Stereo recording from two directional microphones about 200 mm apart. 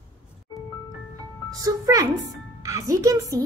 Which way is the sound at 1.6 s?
15° right (ahead or behind).